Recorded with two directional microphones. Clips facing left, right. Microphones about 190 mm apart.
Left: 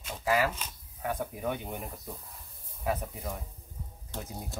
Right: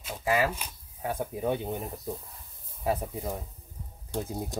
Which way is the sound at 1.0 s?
25° right (ahead or behind).